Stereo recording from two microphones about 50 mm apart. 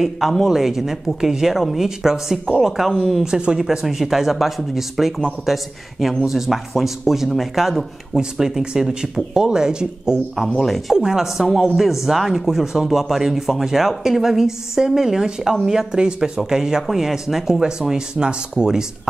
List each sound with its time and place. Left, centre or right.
0.5 s speech: centre
3.3 s speech: centre
3.5 s speech: centre